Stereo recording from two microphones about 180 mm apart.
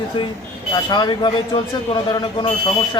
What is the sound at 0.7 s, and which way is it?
Speech, 25° left (ahead or behind).